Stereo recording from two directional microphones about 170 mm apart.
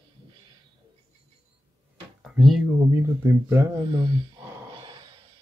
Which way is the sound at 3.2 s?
15° right (ahead or behind).